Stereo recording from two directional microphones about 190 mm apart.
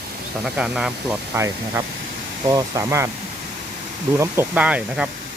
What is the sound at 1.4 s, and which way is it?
Speech, 15° right (ahead or behind).